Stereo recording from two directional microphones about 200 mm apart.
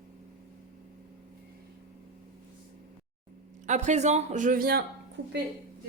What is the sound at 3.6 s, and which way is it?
A man's voice, 35° right (ahead or behind).